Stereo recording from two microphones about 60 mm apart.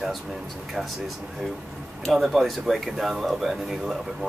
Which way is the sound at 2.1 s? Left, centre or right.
Centre.